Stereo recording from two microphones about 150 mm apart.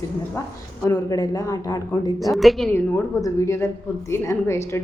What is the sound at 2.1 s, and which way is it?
Speech, centre (ahead or behind).